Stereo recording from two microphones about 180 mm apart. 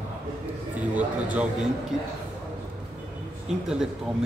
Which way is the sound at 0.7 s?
10° right (ahead or behind).